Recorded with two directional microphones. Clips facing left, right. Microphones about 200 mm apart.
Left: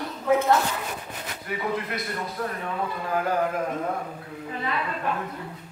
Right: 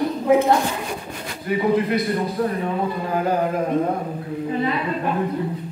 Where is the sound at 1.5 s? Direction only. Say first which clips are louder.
Right 10 dB; 30° right (ahead or behind).